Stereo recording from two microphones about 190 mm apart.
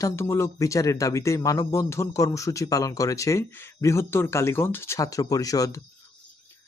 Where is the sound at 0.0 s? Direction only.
15° left (ahead or behind).